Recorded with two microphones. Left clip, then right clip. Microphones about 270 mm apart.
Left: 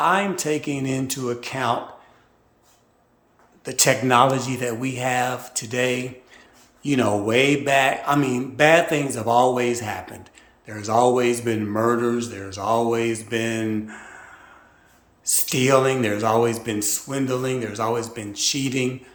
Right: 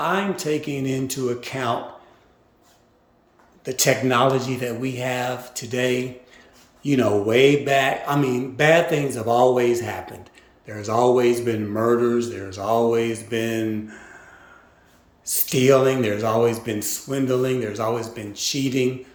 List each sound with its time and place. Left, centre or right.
0.0 s speech: centre
3.6 s speech: centre
15.3 s speech: centre